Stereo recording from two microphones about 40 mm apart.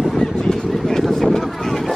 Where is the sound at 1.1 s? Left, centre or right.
Centre.